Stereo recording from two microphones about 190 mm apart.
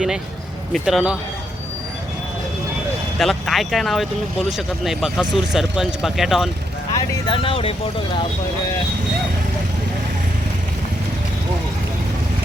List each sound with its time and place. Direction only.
0.7 s speech: centre (ahead or behind)
3.2 s speech: centre (ahead or behind)
6.9 s speech: 25° left (ahead or behind)